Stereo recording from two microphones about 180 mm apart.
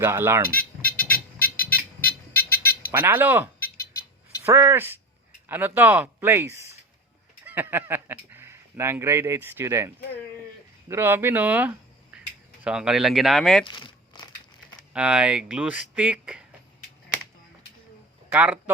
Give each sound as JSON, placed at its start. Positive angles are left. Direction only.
{"t": 0.0, "sound": "speech", "side_deg": -15}
{"t": 0.9, "sound": "a sound", "side_deg": 55}
{"t": 2.9, "sound": "speech", "side_deg": -10}
{"t": 13.7, "sound": "crumpling", "side_deg": 25}
{"t": 14.9, "sound": "speech", "side_deg": -5}
{"t": 18.3, "sound": "speech", "side_deg": -10}